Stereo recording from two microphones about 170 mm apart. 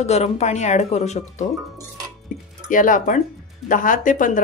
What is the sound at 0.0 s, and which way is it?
Speech, 40° left (ahead or behind).